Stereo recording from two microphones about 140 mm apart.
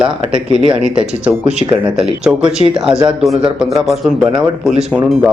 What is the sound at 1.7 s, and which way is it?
Speech, 10° right (ahead or behind).